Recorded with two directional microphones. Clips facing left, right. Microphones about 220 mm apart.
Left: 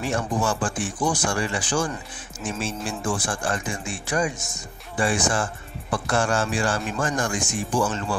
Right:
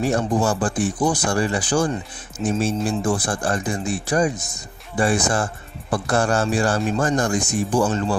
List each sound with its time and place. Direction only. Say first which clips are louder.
0.0 s speech: right 5 dB; 40° right (ahead or behind)